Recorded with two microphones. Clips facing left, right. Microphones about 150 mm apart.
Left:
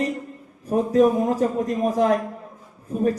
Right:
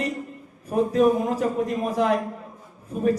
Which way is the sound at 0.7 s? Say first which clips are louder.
Left 2 dB; 40° left (ahead or behind).